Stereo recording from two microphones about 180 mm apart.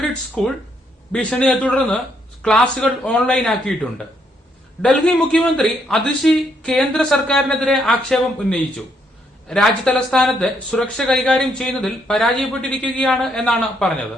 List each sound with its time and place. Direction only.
0.4 s a man's voice: centre (ahead or behind)